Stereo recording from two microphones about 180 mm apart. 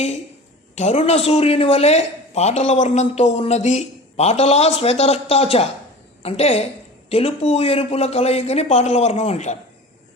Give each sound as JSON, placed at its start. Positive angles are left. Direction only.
{"t": 0.8, "sound": "speech", "side_deg": 35}